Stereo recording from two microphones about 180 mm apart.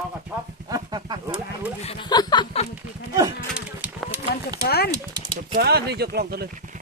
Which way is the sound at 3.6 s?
5° right (ahead or behind).